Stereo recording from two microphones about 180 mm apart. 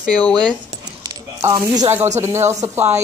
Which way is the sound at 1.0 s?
15° right (ahead or behind).